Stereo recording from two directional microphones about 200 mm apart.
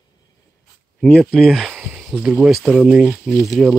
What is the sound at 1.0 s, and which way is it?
Speech, centre (ahead or behind).